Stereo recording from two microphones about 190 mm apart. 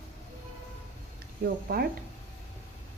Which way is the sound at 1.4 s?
55° right (ahead or behind).